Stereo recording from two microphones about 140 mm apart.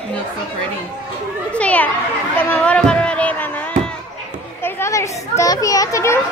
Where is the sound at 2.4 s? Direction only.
10° left (ahead or behind).